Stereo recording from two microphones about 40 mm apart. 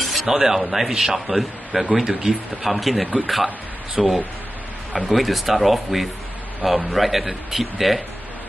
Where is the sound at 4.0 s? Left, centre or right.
Centre.